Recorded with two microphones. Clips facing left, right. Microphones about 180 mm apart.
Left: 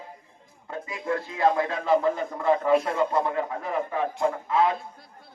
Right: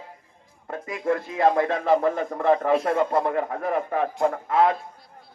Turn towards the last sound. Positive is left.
turn(degrees=-55)  # may be behind; listen again after turning